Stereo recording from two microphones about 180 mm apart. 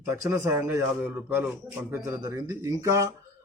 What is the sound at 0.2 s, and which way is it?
Speech, 20° right (ahead or behind).